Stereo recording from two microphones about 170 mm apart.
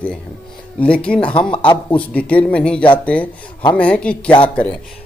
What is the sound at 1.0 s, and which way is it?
Speech, 5° left (ahead or behind).